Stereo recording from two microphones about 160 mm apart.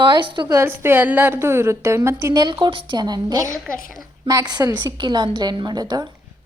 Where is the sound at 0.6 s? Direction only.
15° right (ahead or behind).